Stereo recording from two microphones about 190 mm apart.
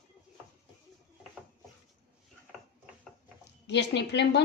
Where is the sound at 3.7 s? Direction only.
65° left (ahead or behind).